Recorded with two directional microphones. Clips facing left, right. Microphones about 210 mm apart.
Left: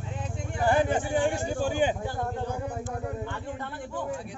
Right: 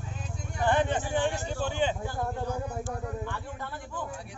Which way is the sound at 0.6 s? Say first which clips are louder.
Left 2 dB; 10° left (ahead or behind).